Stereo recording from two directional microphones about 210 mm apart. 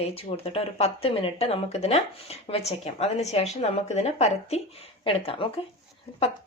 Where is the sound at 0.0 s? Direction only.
30° left (ahead or behind).